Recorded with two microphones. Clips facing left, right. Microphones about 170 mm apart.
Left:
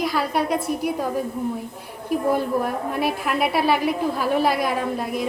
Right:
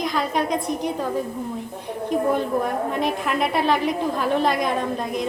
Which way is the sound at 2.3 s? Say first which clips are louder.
Even; 5° left (ahead or behind).